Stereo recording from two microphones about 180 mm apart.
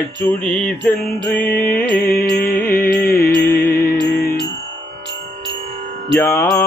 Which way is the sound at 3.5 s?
10° left (ahead or behind).